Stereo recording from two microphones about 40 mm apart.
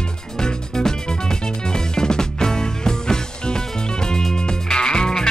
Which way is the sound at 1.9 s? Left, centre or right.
Centre.